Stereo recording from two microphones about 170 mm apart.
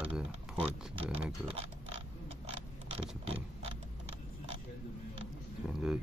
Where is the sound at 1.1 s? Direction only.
35° right (ahead or behind).